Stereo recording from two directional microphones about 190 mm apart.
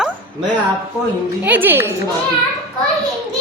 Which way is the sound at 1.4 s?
10° right (ahead or behind).